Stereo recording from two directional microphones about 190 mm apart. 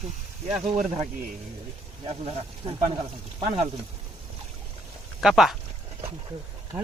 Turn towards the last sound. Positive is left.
turn(degrees=0)  # may be behind; listen again after turning